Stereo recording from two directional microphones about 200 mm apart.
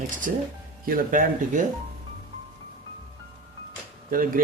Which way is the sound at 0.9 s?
45° right (ahead or behind).